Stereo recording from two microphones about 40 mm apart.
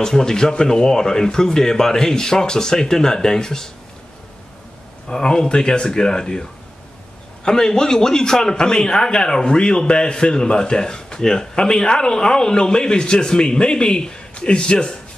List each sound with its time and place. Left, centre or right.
0.0 s a man's voice: centre
5.0 s a man's voice: centre